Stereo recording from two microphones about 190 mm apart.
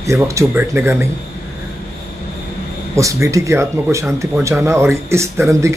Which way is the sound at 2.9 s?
15° right (ahead or behind).